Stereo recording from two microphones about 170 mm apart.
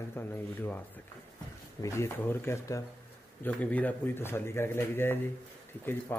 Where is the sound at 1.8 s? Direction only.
15° left (ahead or behind).